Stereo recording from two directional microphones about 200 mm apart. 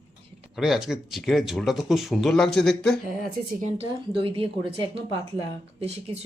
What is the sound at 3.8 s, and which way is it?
Speech, 25° right (ahead or behind).